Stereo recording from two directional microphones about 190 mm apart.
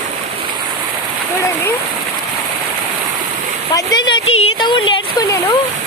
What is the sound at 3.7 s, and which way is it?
Speech, 20° left (ahead or behind).